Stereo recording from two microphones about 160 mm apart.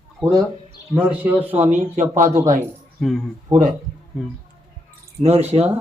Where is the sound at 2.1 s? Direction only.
55° right (ahead or behind).